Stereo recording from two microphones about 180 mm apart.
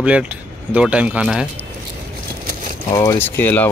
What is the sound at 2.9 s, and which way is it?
Speech, 15° left (ahead or behind).